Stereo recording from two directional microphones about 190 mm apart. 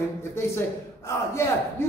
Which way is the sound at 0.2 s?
15° left (ahead or behind).